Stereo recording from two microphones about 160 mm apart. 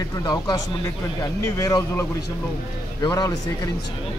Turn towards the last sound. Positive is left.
turn(degrees=25)  # may be behind; listen again after turning